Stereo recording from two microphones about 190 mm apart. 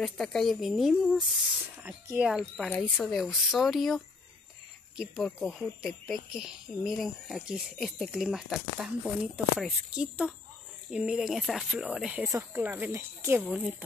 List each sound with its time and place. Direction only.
0.0 s speech: centre (ahead or behind)
12.3 s speech: 15° right (ahead or behind)